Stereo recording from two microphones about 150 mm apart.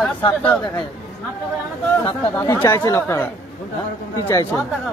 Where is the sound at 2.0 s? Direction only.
15° left (ahead or behind).